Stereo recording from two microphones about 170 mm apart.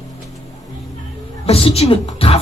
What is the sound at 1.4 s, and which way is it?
Speech, 35° left (ahead or behind).